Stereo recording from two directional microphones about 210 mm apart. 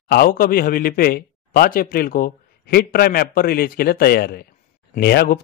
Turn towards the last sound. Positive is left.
turn(degrees=50)  # may be behind; listen again after turning